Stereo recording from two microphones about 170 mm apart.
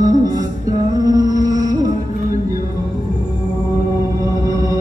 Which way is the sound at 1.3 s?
20° right (ahead or behind).